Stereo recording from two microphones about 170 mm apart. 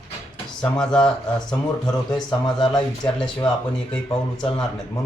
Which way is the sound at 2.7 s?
5° left (ahead or behind).